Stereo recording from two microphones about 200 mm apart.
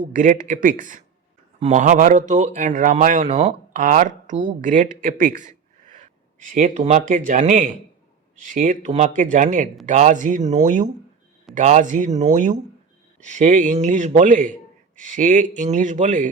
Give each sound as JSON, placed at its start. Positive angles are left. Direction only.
{"t": 0.0, "sound": "speech", "side_deg": -40}